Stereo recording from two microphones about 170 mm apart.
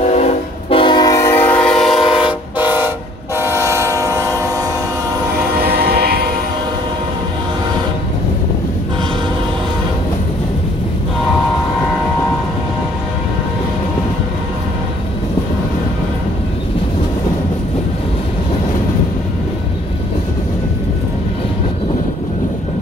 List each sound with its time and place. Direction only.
0.0 s train: 40° left (ahead or behind); by 2.0 s centre (ahead or behind)
2.6 s train: 10° right (ahead or behind)
5.7 s train: 65° right (ahead or behind)